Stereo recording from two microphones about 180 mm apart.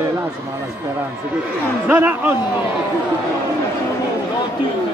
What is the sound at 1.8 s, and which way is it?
Speech, 10° right (ahead or behind).